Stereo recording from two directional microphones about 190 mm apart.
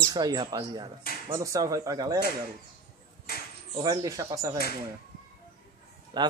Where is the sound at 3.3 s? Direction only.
50° left (ahead or behind).